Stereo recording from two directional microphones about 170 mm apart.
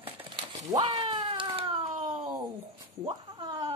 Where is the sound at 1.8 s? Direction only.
50° right (ahead or behind).